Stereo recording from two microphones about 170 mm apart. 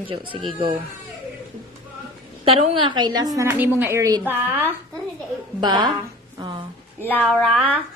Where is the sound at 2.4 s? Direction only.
30° right (ahead or behind).